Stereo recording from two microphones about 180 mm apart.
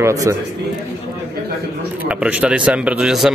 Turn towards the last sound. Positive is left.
turn(degrees=-5)  # may be behind; listen again after turning